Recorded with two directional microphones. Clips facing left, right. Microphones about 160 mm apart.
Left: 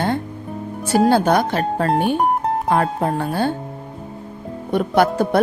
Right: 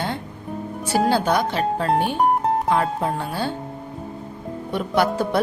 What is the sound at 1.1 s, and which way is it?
Speech, 50° left (ahead or behind).